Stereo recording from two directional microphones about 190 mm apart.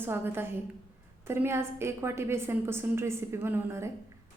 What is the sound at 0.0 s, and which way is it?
A woman's voice, 10° right (ahead or behind).